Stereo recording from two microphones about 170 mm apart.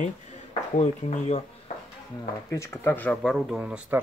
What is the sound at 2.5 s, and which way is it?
Speech, 15° left (ahead or behind).